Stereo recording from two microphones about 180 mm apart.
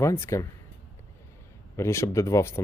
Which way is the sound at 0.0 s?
15° left (ahead or behind).